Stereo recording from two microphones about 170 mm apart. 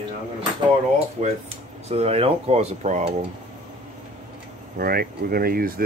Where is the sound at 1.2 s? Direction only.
45° right (ahead or behind).